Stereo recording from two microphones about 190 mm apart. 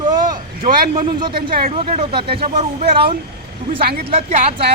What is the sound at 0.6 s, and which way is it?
Speech, 50° right (ahead or behind).